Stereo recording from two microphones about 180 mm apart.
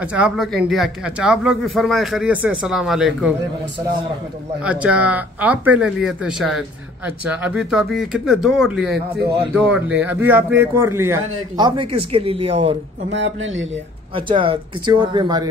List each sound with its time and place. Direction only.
0.0 s a man's voice: 5° right (ahead or behind)
4.6 s a man's voice: 5° right (ahead or behind); by 12.5 s 30° right (ahead or behind)
13.1 s speech: 90° right
14.1 s speech: 30° right (ahead or behind)